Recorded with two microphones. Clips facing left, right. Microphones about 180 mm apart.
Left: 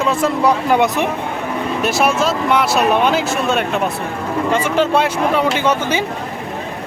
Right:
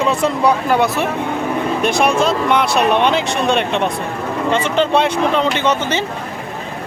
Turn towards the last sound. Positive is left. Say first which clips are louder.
# even
turn(degrees=10)  # may be behind; listen again after turning